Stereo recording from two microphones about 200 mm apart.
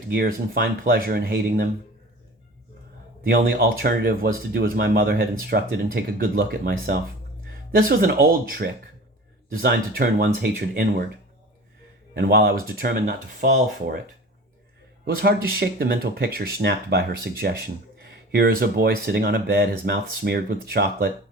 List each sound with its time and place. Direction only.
0.1 s speech: 50° right (ahead or behind)
3.2 s speech: 45° right (ahead or behind)
12.1 s speech: 50° right (ahead or behind)
15.0 s speech: 55° right (ahead or behind)